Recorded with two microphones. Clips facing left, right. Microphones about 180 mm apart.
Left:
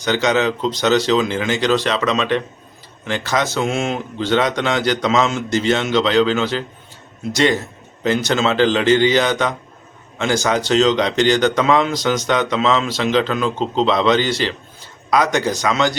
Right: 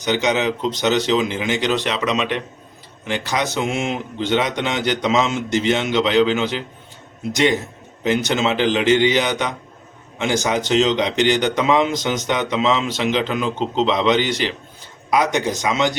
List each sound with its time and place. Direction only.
0.0 s a man's voice: 15° right (ahead or behind)